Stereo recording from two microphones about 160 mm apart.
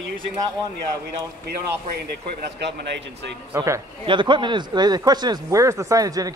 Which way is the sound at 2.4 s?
90° right.